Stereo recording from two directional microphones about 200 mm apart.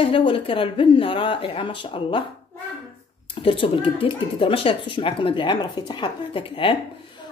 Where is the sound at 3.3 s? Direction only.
25° left (ahead or behind).